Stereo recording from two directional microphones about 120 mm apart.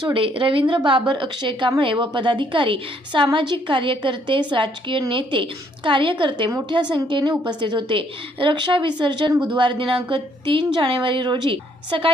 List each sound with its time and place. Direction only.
0.0 s a woman's voice: 45° right (ahead or behind)